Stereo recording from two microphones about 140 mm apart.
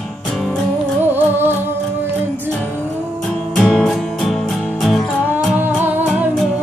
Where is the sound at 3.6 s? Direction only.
5° left (ahead or behind).